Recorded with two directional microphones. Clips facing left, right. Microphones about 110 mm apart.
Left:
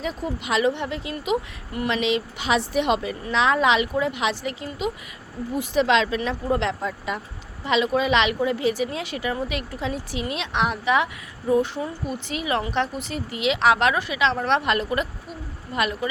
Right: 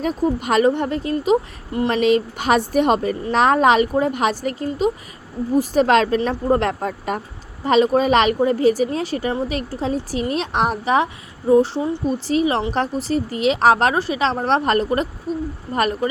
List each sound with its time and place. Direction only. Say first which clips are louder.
0.0 s a woman's voice: right 8 dB; 45° right (ahead or behind)